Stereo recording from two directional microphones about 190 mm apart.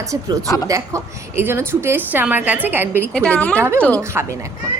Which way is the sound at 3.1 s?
5° left (ahead or behind).